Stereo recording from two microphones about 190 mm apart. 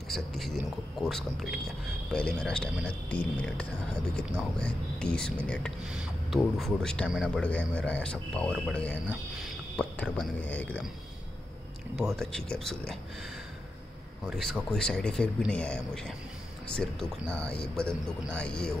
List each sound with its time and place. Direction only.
0.1 s speech: centre (ahead or behind)
11.9 s speech: centre (ahead or behind)
14.2 s speech: centre (ahead or behind)